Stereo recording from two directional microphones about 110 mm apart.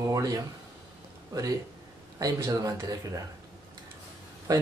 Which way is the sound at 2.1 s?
30° right (ahead or behind).